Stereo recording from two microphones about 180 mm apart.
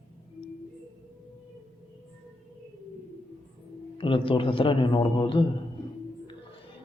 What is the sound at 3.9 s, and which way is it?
A man's voice, 30° left (ahead or behind).